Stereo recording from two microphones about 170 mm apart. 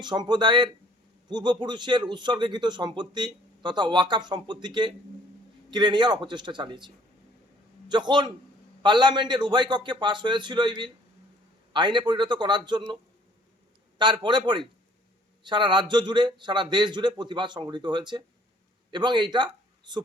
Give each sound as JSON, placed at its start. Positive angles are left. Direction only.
{"t": 0.0, "sound": "a man's voice", "side_deg": -25}
{"t": 14.0, "sound": "a man's voice", "side_deg": -25}